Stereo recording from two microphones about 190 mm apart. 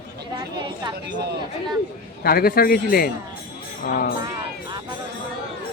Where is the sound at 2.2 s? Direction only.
50° left (ahead or behind).